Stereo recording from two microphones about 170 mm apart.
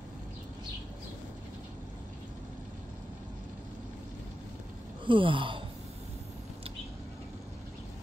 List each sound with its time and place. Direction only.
5.0 s gasp: 30° right (ahead or behind)